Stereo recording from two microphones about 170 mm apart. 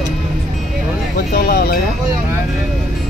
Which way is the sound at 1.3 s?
65° left (ahead or behind).